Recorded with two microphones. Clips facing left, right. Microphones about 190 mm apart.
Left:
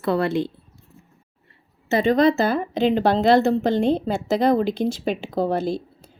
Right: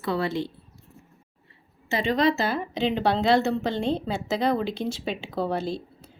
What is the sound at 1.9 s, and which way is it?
Speech, 45° left (ahead or behind).